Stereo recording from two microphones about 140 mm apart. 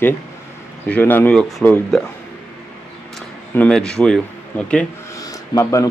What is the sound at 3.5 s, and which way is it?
Speech, 5° left (ahead or behind).